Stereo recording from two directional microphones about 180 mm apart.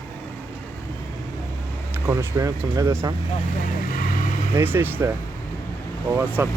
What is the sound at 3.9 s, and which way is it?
Vehicle, 45° left (ahead or behind).